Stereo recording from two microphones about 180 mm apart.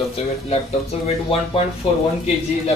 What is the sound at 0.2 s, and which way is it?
Speech, 35° left (ahead or behind).